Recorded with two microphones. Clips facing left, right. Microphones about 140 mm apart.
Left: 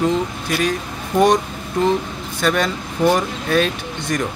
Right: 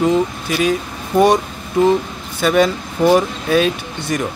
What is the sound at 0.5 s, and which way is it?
Speech, 5° right (ahead or behind).